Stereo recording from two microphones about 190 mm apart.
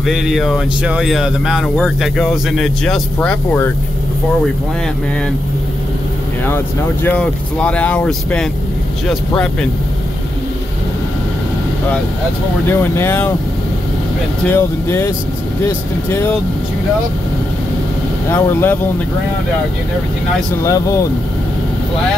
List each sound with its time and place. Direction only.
0.0 s speech: centre (ahead or behind)
6.4 s speech: 10° left (ahead or behind)
12.6 s speech: 15° left (ahead or behind)
14.5 s speech: 15° left (ahead or behind)
18.3 s speech: 10° left (ahead or behind)
20.6 s speech: 15° left (ahead or behind)